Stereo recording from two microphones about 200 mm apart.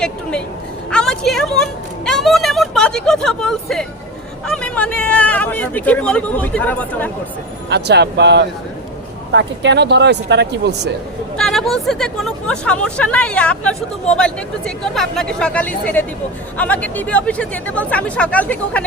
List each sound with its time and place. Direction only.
0.0 s bow-wow: 5° left (ahead or behind)
0.9 s a sound: 5° left (ahead or behind)
4.4 s speech: 5° left (ahead or behind)
7.7 s speech: 55° right (ahead or behind)
11.3 s speech: centre (ahead or behind)